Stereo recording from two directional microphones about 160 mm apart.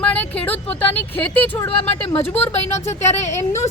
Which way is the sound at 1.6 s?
40° left (ahead or behind).